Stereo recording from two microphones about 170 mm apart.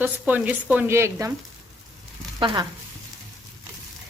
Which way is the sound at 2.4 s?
30° right (ahead or behind).